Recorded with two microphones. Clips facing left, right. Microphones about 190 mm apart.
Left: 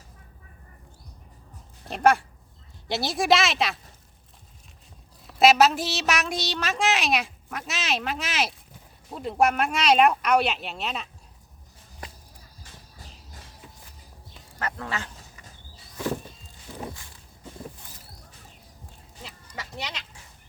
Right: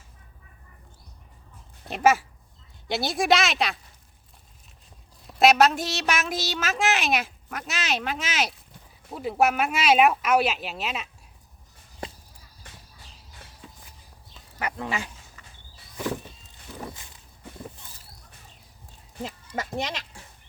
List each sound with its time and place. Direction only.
1.8 s a woman's voice: centre (ahead or behind)
5.2 s a woman's voice: centre (ahead or behind)
12.0 s a sound: 25° right (ahead or behind)
14.6 s speech: 15° right (ahead or behind)
16.9 s walk: 20° right (ahead or behind)
19.1 s goat: 45° right (ahead or behind)